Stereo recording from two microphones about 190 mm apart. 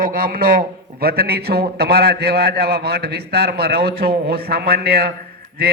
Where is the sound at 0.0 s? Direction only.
50° right (ahead or behind).